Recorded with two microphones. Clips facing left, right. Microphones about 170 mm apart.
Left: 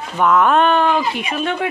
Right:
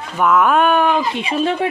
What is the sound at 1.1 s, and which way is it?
Speech, 30° right (ahead or behind).